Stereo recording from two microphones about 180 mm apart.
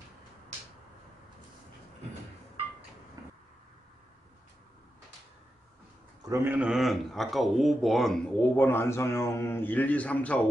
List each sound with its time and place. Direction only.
3.2 s cupboard open or close: 20° right (ahead or behind)
6.2 s speech: 15° right (ahead or behind); by 10.4 s 10° left (ahead or behind)